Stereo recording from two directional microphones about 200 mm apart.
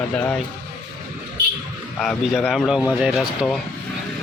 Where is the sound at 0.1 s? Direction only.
5° left (ahead or behind).